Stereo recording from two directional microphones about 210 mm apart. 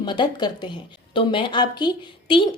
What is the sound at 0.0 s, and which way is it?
A woman's voice, 20° left (ahead or behind).